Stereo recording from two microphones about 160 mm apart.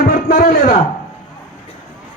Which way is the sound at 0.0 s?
65° left (ahead or behind).